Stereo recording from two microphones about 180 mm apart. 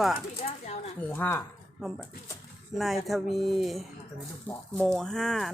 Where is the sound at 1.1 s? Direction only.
10° left (ahead or behind).